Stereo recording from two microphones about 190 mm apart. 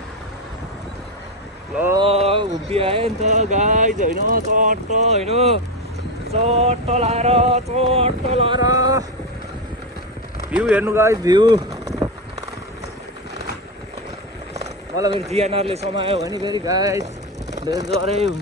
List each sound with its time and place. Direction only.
2.0 s speech: 30° right (ahead or behind)
10.5 s speech: 5° right (ahead or behind)
15.1 s speech: 35° right (ahead or behind)
16.2 s speech: 20° right (ahead or behind)
17.0 s vehicle: 35° right (ahead or behind)
18.0 s speech: 35° right (ahead or behind)